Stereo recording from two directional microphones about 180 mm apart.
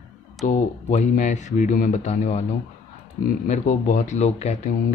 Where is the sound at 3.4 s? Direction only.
45° left (ahead or behind).